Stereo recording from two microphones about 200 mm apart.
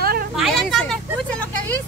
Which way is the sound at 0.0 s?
50° right (ahead or behind).